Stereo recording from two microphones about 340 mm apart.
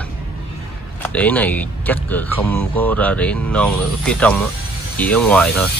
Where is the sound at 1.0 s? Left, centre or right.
Centre.